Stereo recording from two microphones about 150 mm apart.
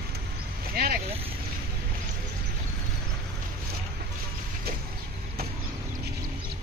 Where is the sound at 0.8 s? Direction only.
80° right.